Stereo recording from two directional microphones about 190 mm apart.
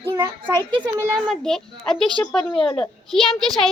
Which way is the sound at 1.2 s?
Centre (ahead or behind).